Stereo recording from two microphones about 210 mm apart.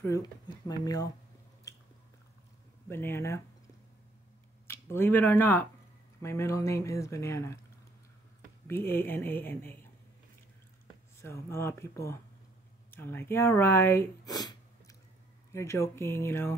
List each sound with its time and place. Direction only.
0.0 s speech: 15° left (ahead or behind)
2.9 s speech: 10° left (ahead or behind)
4.6 s speech: 10° left (ahead or behind)
8.6 s speech: 10° left (ahead or behind)
11.1 s speech: 15° left (ahead or behind)